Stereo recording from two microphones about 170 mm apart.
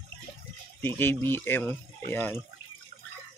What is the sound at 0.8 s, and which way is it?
A man's voice, 10° left (ahead or behind).